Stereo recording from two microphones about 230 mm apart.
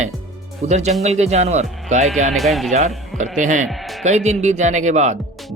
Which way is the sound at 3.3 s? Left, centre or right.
Right.